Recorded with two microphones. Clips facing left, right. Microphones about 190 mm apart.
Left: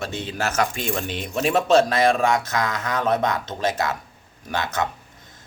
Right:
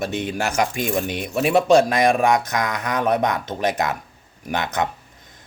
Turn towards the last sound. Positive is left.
turn(degrees=-20)  # may be behind; listen again after turning